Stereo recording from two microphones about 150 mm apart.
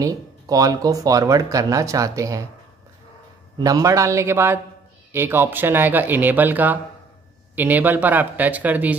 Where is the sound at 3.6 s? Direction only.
20° right (ahead or behind).